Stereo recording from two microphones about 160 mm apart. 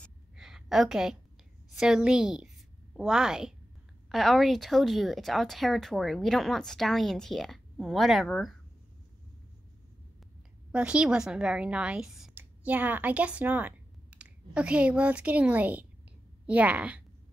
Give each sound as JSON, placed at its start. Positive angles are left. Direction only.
{"t": 0.0, "sound": "a sound", "side_deg": -5}
{"t": 1.7, "sound": "a woman's voice", "side_deg": -5}
{"t": 10.7, "sound": "a woman's voice", "side_deg": -5}